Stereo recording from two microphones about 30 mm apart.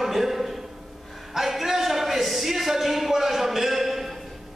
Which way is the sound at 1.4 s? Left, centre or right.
Centre.